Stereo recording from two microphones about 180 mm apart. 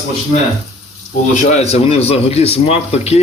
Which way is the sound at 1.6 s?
35° left (ahead or behind).